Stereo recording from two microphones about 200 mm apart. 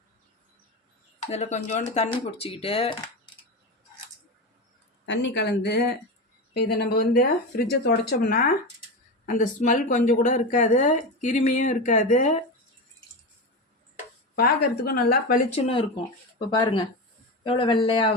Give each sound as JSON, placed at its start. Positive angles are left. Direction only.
{"t": 1.2, "sound": "speech", "side_deg": 35}
{"t": 5.0, "sound": "speech", "side_deg": 65}
{"t": 14.3, "sound": "speech", "side_deg": 50}
{"t": 15.5, "sound": "speech", "side_deg": 30}